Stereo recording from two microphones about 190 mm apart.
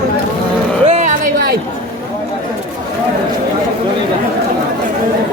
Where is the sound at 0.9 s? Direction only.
40° right (ahead or behind).